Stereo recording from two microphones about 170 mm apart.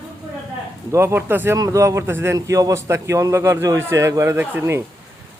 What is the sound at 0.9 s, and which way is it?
A man's voice, 15° right (ahead or behind).